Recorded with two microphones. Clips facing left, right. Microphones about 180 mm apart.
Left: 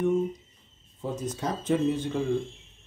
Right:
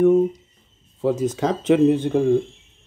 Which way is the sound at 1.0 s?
90° right.